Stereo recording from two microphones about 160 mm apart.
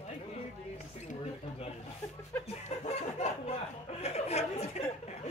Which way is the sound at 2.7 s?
45° left (ahead or behind).